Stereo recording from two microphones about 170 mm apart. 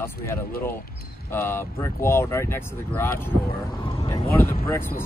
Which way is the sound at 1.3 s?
15° left (ahead or behind).